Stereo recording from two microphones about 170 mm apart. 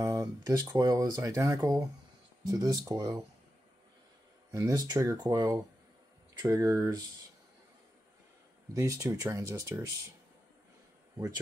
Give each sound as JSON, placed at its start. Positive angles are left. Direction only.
{"t": 0.0, "sound": "speech", "side_deg": -20}
{"t": 4.5, "sound": "speech", "side_deg": -20}
{"t": 8.7, "sound": "speech", "side_deg": -20}